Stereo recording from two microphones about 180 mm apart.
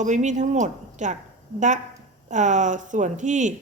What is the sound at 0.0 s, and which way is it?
A woman's voice, 40° right (ahead or behind).